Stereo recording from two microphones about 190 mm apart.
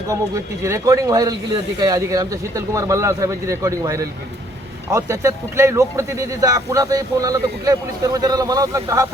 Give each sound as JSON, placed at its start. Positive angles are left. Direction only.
{"t": 0.1, "sound": "speech", "side_deg": -15}